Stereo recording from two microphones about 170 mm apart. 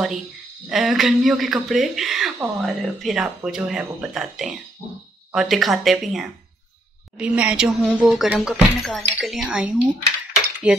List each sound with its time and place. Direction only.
0.7 s speech: centre (ahead or behind)